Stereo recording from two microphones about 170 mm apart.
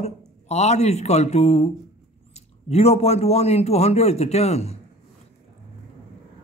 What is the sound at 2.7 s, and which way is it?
Speech, 40° left (ahead or behind).